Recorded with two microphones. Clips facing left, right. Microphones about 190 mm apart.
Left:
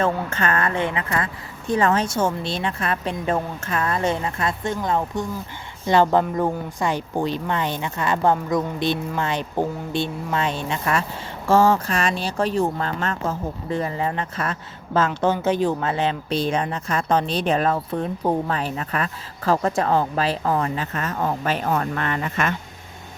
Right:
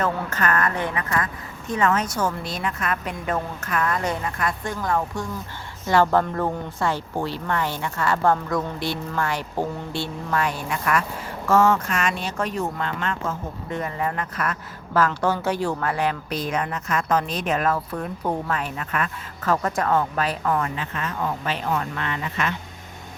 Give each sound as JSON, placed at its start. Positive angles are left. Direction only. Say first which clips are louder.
{"t": 0.0, "sound": "speech", "louder": "left 2 dB", "side_deg": 25}